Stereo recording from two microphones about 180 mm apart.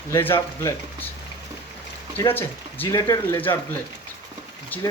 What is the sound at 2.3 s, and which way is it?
Speech, 10° left (ahead or behind).